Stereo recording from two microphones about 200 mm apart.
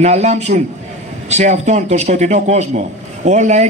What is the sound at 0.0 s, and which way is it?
A man's voice, 35° right (ahead or behind).